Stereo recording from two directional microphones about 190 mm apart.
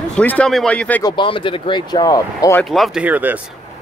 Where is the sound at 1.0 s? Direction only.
25° left (ahead or behind).